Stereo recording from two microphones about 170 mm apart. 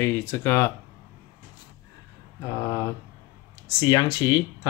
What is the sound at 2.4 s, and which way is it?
Speech, 20° left (ahead or behind).